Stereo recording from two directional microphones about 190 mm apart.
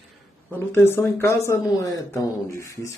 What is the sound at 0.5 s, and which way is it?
Speech, 10° left (ahead or behind).